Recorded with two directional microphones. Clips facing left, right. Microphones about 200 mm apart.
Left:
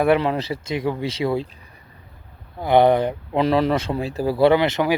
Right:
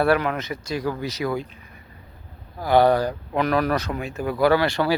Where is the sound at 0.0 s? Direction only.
25° left (ahead or behind).